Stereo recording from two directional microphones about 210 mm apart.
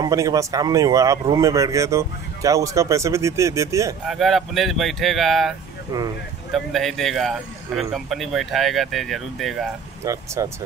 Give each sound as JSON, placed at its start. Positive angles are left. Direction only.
{"t": 0.0, "sound": "speech", "side_deg": -15}
{"t": 4.0, "sound": "speech", "side_deg": 0}
{"t": 10.0, "sound": "speech", "side_deg": -15}